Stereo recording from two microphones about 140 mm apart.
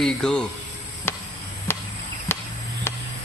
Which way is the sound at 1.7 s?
15° left (ahead or behind).